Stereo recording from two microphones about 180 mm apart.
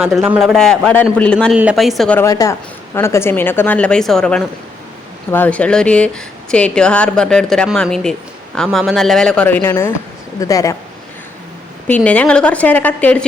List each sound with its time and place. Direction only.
0.2 s speech: centre (ahead or behind)
2.1 s speech: 20° left (ahead or behind)
11.9 s speech: 10° left (ahead or behind)